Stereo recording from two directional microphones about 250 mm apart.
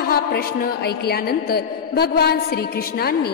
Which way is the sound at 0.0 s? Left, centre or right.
Left.